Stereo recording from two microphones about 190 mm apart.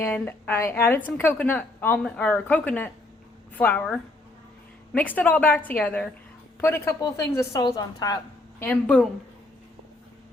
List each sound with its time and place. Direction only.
0.0 s a woman's voice: 10° left (ahead or behind)
8.6 s a woman's voice: 5° left (ahead or behind)